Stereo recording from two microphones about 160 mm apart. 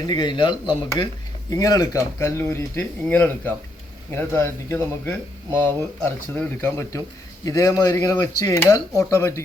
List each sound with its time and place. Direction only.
0.1 s speech: 30° left (ahead or behind)